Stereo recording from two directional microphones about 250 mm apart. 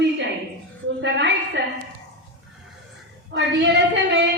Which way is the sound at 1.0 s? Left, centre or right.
Right.